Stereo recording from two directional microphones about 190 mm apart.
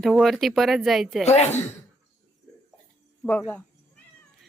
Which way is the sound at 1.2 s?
35° left (ahead or behind).